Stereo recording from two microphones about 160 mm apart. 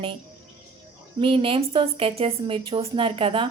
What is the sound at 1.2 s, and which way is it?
A woman's voice, 35° right (ahead or behind).